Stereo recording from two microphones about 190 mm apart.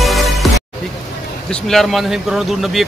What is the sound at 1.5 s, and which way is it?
Speech, centre (ahead or behind).